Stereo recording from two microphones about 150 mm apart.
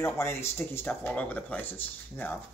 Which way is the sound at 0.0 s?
20° left (ahead or behind).